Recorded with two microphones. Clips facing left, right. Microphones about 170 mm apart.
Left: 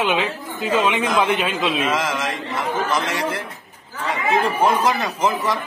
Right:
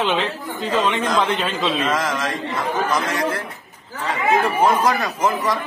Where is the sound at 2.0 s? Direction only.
25° left (ahead or behind).